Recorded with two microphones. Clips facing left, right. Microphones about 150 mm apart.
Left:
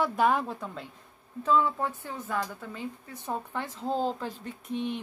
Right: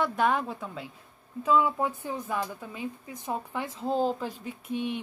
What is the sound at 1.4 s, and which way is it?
Speech, 10° right (ahead or behind).